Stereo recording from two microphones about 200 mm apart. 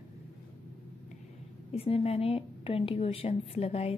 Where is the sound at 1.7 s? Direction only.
30° left (ahead or behind).